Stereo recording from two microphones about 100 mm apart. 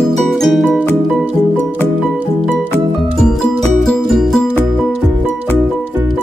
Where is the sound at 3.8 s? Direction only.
Centre (ahead or behind).